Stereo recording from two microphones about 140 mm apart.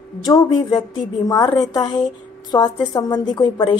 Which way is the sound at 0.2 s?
30° left (ahead or behind).